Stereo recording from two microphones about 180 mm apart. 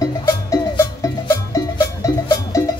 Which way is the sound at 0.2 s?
15° left (ahead or behind).